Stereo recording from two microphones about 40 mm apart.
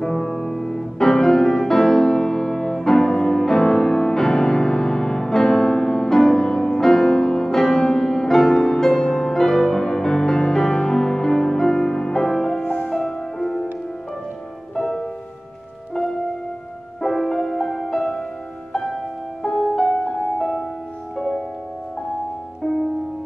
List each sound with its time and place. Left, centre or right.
0.0 s music: centre
12.6 s music: left
13.0 s music: centre
14.8 s music: centre
17.0 s music: centre
19.4 s music: centre